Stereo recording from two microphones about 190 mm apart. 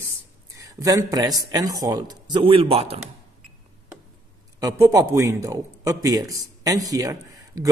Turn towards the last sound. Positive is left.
turn(degrees=-20)  # may be behind; listen again after turning